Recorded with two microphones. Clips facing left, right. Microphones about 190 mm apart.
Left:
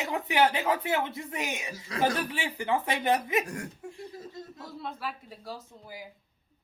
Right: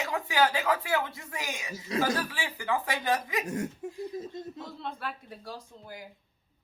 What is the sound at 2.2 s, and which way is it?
A woman's voice, 20° left (ahead or behind).